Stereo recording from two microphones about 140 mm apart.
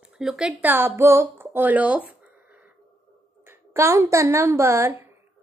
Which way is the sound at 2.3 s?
10° right (ahead or behind).